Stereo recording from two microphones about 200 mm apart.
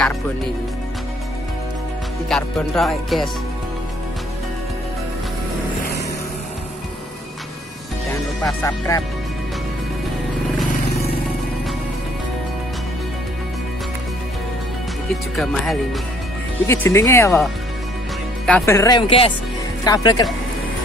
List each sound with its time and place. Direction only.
2.2 s speech: centre (ahead or behind)
8.1 s speech: 15° left (ahead or behind)
15.3 s speech: centre (ahead or behind)
16.6 s speech: 10° left (ahead or behind)
18.4 s speech: 10° left (ahead or behind)